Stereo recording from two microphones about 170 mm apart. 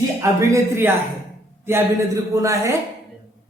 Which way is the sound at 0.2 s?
15° right (ahead or behind).